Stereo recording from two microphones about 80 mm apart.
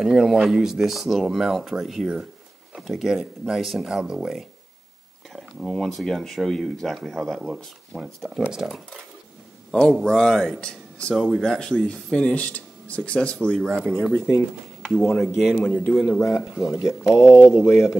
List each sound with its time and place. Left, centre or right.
0.0 s a man's voice: centre
13.6 s speech: centre
15.2 s speech: centre
15.5 s a man's voice: centre
15.9 s speech: centre
16.2 s speech: left